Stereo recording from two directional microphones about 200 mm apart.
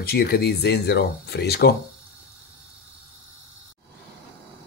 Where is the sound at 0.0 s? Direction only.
50° left (ahead or behind).